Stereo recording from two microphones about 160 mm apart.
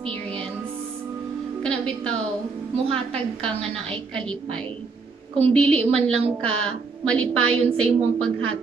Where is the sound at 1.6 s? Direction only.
5° left (ahead or behind).